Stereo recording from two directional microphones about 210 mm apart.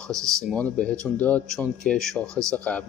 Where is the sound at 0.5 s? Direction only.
5° left (ahead or behind).